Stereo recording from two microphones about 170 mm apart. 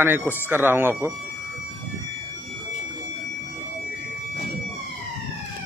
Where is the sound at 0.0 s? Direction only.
10° right (ahead or behind).